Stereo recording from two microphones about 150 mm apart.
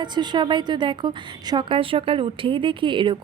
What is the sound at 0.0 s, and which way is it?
A woman's voice, 30° right (ahead or behind).